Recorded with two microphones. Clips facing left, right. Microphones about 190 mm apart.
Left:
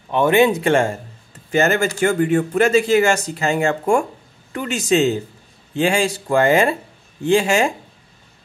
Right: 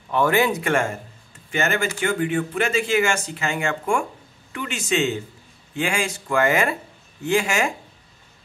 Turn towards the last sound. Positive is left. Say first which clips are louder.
# left 5 dB
turn(degrees=30)  # may be behind; listen again after turning